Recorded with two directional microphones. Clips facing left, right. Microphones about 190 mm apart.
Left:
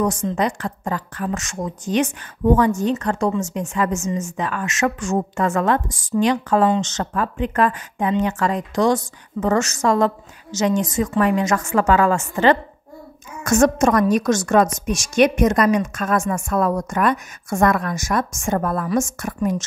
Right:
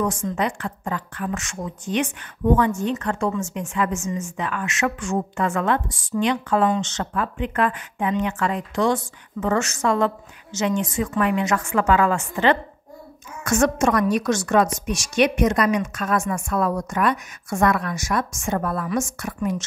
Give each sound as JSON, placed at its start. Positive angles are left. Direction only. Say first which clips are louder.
{"t": 0.4, "sound": "a woman's voice", "louder": "left 3 dB", "side_deg": 40}